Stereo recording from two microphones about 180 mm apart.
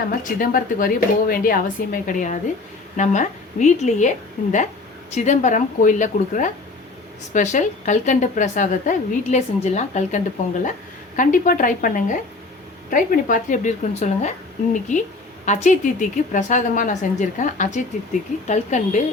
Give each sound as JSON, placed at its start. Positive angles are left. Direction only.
{"t": 0.2, "sound": "a woman's voice", "side_deg": 50}
{"t": 11.2, "sound": "a woman's voice", "side_deg": 50}